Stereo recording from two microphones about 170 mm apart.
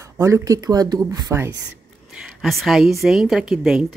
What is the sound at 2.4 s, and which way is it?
Speech, centre (ahead or behind).